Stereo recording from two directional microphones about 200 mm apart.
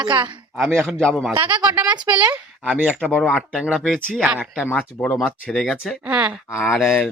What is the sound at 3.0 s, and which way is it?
Speech, 10° left (ahead or behind).